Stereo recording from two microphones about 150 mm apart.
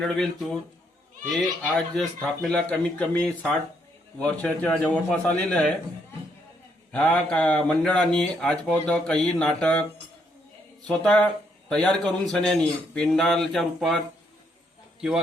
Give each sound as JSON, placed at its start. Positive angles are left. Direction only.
{"t": 0.0, "sound": "speech", "side_deg": 0}
{"t": 1.3, "sound": "a man's voice", "side_deg": 0}
{"t": 6.9, "sound": "speech", "side_deg": 5}
{"t": 10.8, "sound": "a man's voice", "side_deg": 5}